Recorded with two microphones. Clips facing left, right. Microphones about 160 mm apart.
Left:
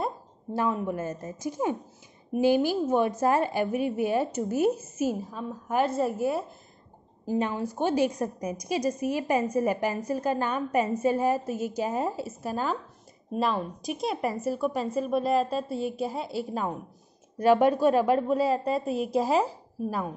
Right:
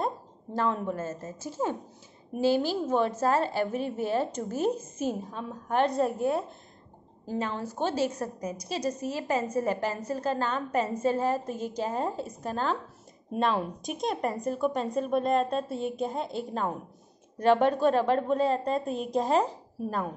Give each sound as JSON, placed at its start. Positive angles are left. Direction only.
{"t": 0.0, "sound": "a woman's voice", "side_deg": 10}